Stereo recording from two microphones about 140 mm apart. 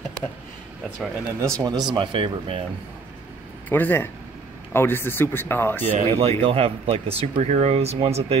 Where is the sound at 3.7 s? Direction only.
15° left (ahead or behind).